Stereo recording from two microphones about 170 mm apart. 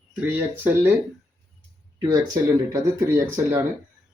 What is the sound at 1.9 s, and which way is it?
Speech, 20° right (ahead or behind).